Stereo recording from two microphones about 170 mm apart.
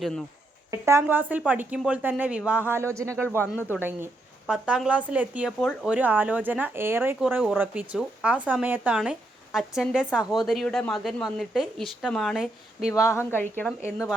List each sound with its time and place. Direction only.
0.0 s a woman's voice: 5° left (ahead or behind)
0.7 s a woman's voice: 15° right (ahead or behind)
12.9 s speech: 15° left (ahead or behind)